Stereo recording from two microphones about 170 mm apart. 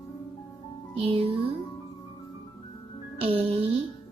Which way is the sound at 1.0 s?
35° right (ahead or behind).